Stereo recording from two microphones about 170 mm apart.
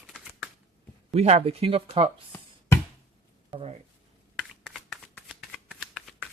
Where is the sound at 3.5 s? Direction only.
40° right (ahead or behind).